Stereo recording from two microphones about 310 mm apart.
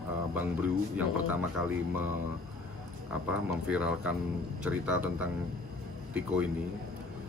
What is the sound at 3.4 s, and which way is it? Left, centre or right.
Speech, centre.